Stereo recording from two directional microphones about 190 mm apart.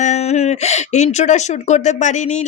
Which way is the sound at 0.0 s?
35° left (ahead or behind).